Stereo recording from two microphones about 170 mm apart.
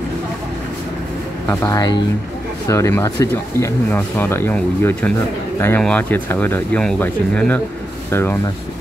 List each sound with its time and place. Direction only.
1.5 s speech: 20° left (ahead or behind)